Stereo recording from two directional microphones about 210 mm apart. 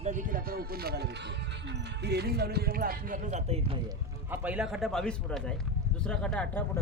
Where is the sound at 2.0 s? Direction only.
50° right (ahead or behind); by 3.8 s 30° right (ahead or behind).